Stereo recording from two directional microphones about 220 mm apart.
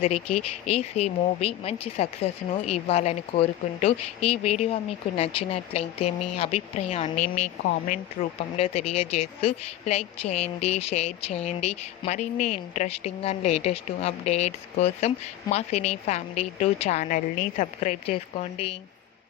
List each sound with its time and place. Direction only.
0.7 s speech: 30° left (ahead or behind)